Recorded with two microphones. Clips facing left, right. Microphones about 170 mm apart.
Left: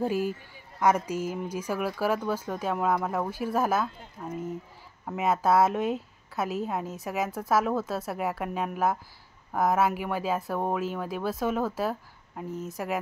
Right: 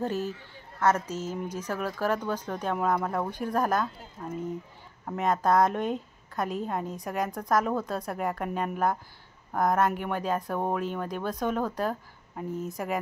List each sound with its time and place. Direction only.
0.0 s a woman's voice: 10° left (ahead or behind)